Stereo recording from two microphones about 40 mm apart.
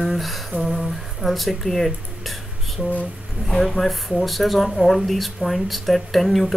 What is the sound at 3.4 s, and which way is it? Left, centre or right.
Speech, centre.